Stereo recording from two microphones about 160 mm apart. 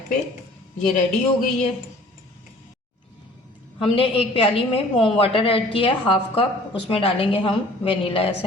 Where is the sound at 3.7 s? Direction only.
35° left (ahead or behind).